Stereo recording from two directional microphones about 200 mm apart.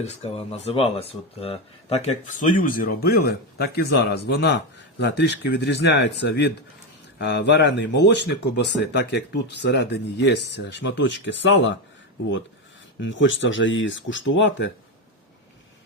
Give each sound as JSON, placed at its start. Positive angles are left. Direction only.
{"t": 0.0, "sound": "speech", "side_deg": 30}
{"t": 13.0, "sound": "speech", "side_deg": 70}